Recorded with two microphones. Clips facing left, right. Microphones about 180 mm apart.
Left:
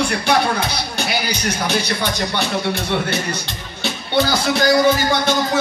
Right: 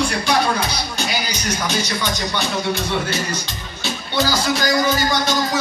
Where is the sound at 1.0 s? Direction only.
60° left (ahead or behind).